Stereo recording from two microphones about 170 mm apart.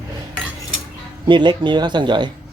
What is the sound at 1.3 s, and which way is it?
Speech, 25° right (ahead or behind).